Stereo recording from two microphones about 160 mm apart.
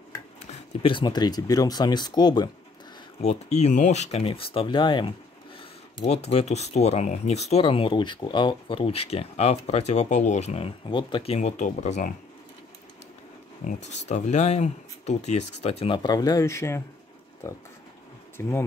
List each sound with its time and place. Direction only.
0.5 s speech: 30° left (ahead or behind)
3.2 s speech: 40° left (ahead or behind)
5.9 s speech: 40° left (ahead or behind)
11.3 s speech: 45° left (ahead or behind)
13.8 s speech: 45° left (ahead or behind)
16.0 s speech: 25° left (ahead or behind)